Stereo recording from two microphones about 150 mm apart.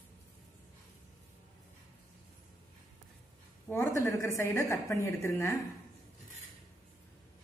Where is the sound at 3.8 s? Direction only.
20° left (ahead or behind).